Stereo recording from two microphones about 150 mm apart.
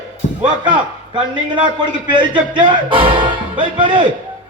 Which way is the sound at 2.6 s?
35° right (ahead or behind).